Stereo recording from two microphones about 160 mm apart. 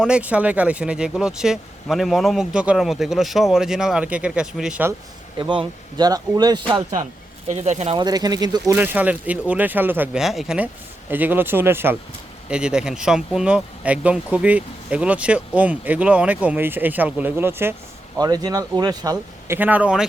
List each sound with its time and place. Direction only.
0.0 s speech: 5° right (ahead or behind)
5.4 s speech: 30° right (ahead or behind)
7.4 s speech: 45° right (ahead or behind)
7.9 s speech: 25° right (ahead or behind)
8.7 s speech: 10° right (ahead or behind)
18.2 s speech: 25° right (ahead or behind)
19.5 s speech: 10° right (ahead or behind)